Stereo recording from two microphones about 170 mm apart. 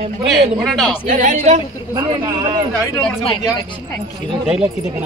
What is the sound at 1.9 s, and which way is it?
Speech, 25° right (ahead or behind).